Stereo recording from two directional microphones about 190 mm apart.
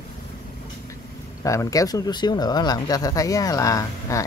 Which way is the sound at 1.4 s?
15° left (ahead or behind).